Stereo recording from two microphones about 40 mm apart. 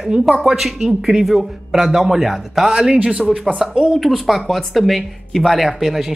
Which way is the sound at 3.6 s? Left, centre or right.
Centre.